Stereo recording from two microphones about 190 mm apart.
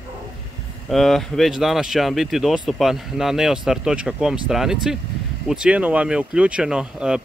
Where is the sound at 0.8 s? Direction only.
Centre (ahead or behind).